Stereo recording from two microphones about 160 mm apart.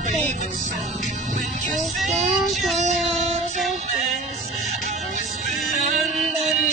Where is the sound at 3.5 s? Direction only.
Centre (ahead or behind).